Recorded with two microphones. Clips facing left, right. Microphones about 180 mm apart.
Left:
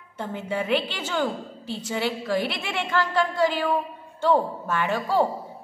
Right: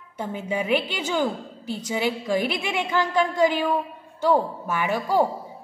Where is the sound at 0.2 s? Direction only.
10° right (ahead or behind).